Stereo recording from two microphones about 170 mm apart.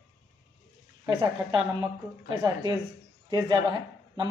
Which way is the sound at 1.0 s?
25° right (ahead or behind).